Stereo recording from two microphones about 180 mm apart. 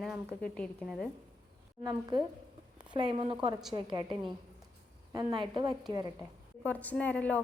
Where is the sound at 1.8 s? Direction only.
25° right (ahead or behind).